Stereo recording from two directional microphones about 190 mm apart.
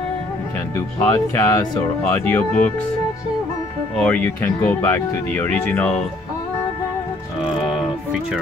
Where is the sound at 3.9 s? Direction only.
10° left (ahead or behind).